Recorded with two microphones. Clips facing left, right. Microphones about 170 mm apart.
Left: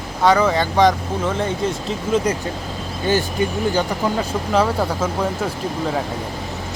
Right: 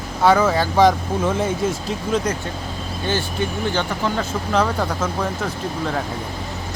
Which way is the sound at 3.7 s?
10° left (ahead or behind).